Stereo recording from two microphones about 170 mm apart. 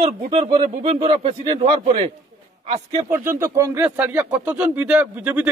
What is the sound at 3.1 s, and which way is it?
A man's voice, 15° right (ahead or behind).